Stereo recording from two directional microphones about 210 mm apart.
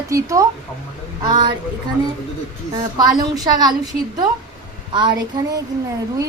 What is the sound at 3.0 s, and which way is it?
A woman's voice, 20° right (ahead or behind).